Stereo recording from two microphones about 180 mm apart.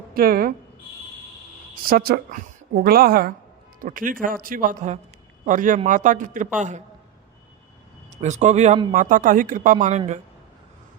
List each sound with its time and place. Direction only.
0.1 s speech: 55° right (ahead or behind)
1.7 s speech: 55° right (ahead or behind)
8.1 s speech: 40° right (ahead or behind)